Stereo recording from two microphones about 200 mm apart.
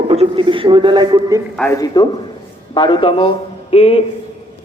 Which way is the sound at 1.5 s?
10° left (ahead or behind).